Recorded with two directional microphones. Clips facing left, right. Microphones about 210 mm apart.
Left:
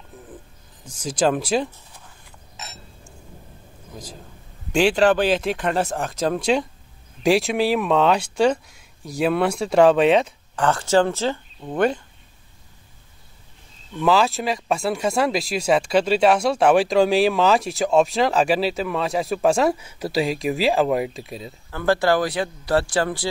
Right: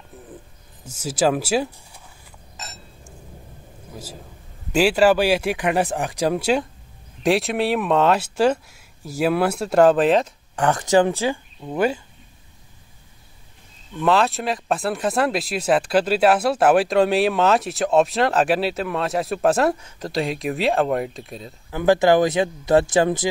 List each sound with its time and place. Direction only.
0.8 s speech: 5° right (ahead or behind)
3.9 s a sound: 5° right (ahead or behind)
4.7 s speech: 5° right (ahead or behind)
10.5 s speech: 20° right (ahead or behind)
13.9 s speech: centre (ahead or behind)
21.6 s speech: 15° right (ahead or behind)